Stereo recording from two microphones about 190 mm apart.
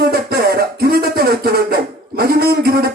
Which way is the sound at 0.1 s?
55° right (ahead or behind).